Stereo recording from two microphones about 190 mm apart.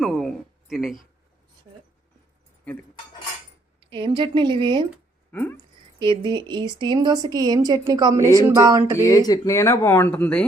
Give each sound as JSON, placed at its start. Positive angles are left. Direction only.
{"t": 0.0, "sound": "a sound", "side_deg": 0}
{"t": 3.9, "sound": "a woman's voice", "side_deg": -25}
{"t": 5.3, "sound": "speech", "side_deg": 10}
{"t": 6.0, "sound": "a woman's voice", "side_deg": -25}
{"t": 8.4, "sound": "a sound", "side_deg": -20}
{"t": 9.0, "sound": "speech", "side_deg": 15}